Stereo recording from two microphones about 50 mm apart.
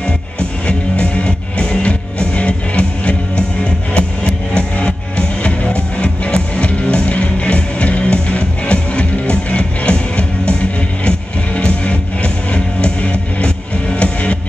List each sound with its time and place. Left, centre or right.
0.0 s music: left